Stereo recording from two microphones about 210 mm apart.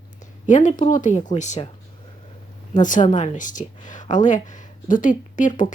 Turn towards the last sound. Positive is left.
turn(degrees=40)  # may be behind; listen again after turning